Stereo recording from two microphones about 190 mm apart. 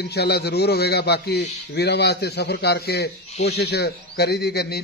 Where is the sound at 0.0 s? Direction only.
60° left (ahead or behind).